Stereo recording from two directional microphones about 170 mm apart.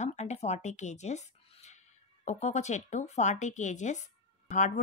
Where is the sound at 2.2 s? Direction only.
45° left (ahead or behind).